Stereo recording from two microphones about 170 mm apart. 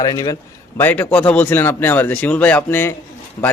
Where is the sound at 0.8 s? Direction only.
10° left (ahead or behind).